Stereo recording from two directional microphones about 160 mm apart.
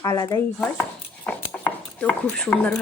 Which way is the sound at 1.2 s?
10° left (ahead or behind).